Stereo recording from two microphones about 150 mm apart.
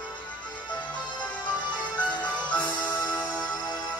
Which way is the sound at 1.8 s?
10° left (ahead or behind).